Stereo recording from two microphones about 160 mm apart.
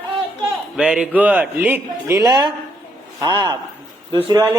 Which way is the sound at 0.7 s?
5° right (ahead or behind).